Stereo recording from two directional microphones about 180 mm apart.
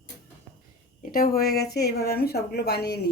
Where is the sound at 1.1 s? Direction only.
55° left (ahead or behind).